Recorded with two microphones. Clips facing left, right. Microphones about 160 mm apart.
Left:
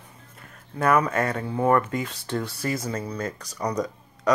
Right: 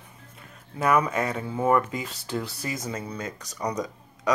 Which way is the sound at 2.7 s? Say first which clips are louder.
Left 3 dB; 20° right (ahead or behind).